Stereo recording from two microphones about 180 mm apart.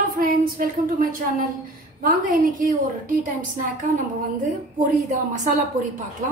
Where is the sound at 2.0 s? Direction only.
45° right (ahead or behind).